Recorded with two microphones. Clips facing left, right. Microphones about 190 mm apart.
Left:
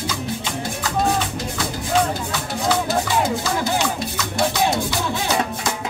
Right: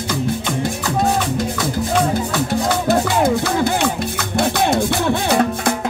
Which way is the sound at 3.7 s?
60° right (ahead or behind).